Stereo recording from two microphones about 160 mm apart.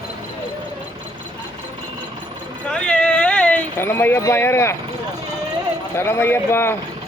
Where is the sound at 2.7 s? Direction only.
5° left (ahead or behind).